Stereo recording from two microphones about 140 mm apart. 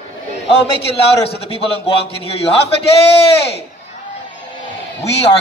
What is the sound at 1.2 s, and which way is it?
A man's voice, 45° left (ahead or behind).